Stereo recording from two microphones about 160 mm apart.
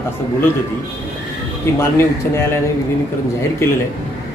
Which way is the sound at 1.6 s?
15° left (ahead or behind).